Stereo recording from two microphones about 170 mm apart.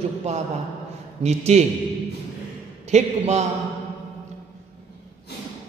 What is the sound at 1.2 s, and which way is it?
Speech, 40° right (ahead or behind).